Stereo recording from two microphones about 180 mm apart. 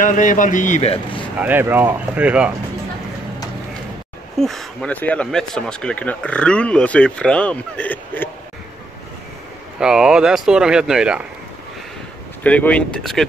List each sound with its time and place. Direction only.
0.0 s a man's voice: 45° left (ahead or behind)
1.4 s speech: 10° right (ahead or behind)
4.4 s speech: centre (ahead or behind)
9.8 s speech: 5° right (ahead or behind)
12.4 s speech: 10° left (ahead or behind)